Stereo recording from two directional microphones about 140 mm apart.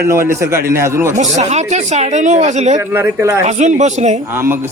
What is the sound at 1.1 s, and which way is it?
Speech, 55° right (ahead or behind).